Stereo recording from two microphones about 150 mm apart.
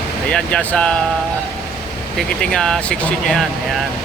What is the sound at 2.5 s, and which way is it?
Speech, 5° left (ahead or behind).